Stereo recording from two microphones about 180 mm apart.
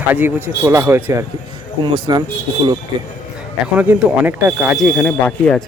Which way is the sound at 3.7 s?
10° right (ahead or behind).